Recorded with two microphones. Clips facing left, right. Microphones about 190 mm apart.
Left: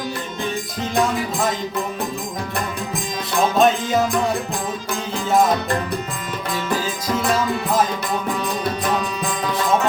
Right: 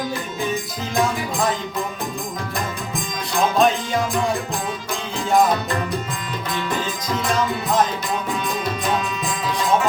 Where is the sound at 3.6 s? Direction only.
Centre (ahead or behind).